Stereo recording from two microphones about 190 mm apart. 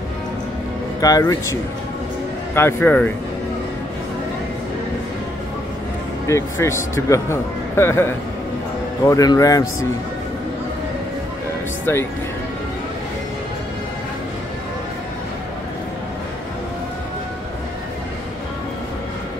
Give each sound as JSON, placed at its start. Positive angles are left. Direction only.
{"t": 1.0, "sound": "speech", "side_deg": 15}
{"t": 6.2, "sound": "speech", "side_deg": 15}
{"t": 11.8, "sound": "speech", "side_deg": 10}